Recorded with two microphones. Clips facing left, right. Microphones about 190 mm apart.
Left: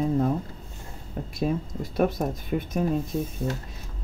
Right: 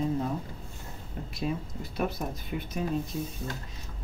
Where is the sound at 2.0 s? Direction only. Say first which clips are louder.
Left 7 dB; 50° left (ahead or behind).